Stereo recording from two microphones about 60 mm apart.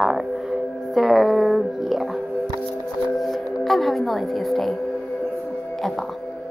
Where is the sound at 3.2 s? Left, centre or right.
Centre.